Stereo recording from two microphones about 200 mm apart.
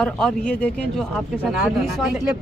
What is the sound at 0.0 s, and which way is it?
Speech, 5° left (ahead or behind).